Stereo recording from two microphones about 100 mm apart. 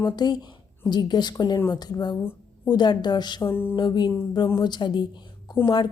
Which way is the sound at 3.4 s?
20° left (ahead or behind).